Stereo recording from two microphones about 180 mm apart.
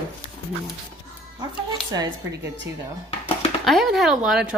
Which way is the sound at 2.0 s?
90° right.